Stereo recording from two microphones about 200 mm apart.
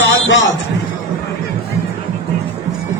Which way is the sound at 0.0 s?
65° left (ahead or behind).